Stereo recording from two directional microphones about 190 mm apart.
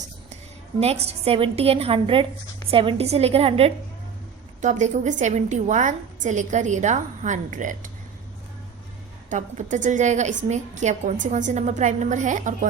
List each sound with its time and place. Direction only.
0.8 s a woman's voice: 35° right (ahead or behind)
9.3 s a woman's voice: 40° right (ahead or behind)